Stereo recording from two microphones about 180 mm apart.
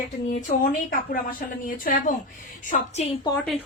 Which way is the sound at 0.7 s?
50° left (ahead or behind).